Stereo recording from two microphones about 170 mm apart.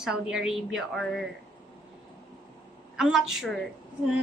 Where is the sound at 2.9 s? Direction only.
Centre (ahead or behind).